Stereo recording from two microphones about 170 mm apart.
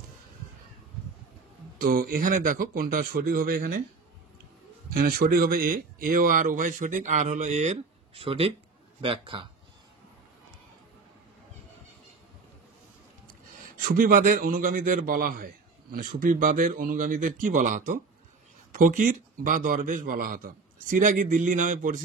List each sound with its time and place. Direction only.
1.8 s a man's voice: 55° right (ahead or behind)
4.8 s a man's voice: 60° right (ahead or behind); by 9.5 s 30° right (ahead or behind)
13.7 s a man's voice: 55° right (ahead or behind)